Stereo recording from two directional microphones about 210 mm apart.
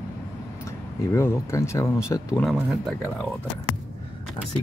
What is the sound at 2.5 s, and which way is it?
Speech, centre (ahead or behind).